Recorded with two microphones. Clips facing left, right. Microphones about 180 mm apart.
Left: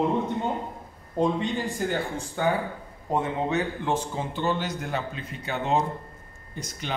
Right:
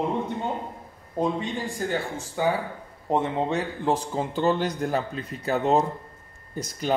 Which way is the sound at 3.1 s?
30° right (ahead or behind).